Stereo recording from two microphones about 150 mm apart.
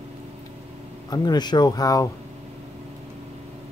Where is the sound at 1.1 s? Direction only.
30° left (ahead or behind).